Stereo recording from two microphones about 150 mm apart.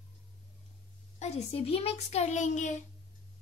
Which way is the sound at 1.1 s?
45° left (ahead or behind).